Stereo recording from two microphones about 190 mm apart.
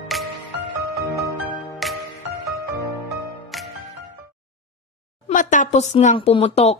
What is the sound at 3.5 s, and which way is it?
Music, centre (ahead or behind).